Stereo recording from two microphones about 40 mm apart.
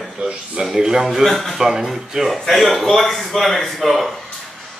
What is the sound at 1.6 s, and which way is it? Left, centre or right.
A man's voice, centre.